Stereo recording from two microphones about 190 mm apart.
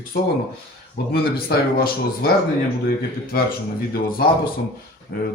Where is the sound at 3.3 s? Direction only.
50° left (ahead or behind).